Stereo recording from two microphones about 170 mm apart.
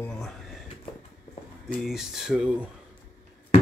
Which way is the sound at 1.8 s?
Centre (ahead or behind).